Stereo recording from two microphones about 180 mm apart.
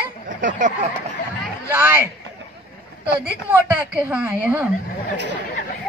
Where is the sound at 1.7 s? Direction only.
10° right (ahead or behind).